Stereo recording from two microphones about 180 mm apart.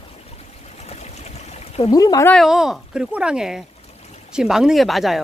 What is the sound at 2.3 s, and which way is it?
Speech, centre (ahead or behind).